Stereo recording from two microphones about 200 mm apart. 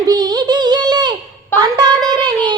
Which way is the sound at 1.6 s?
20° right (ahead or behind).